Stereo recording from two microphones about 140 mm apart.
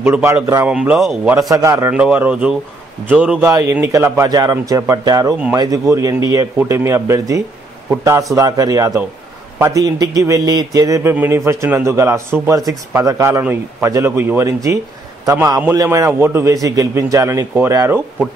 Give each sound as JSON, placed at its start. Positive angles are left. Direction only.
{"t": 0.0, "sound": "a man's voice", "side_deg": -15}
{"t": 0.7, "sound": "a man's voice", "side_deg": -10}
{"t": 1.5, "sound": "a man's voice", "side_deg": -20}
{"t": 3.4, "sound": "a man's voice", "side_deg": -20}